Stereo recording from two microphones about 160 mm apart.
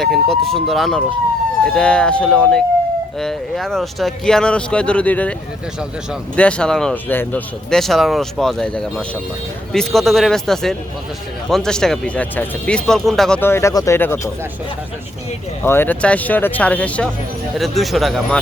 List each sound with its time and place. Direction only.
0.0 s speech: centre (ahead or behind)
6.3 s speech: 5° left (ahead or behind)
13.4 s speech: 15° left (ahead or behind)
15.6 s speech: 15° left (ahead or behind)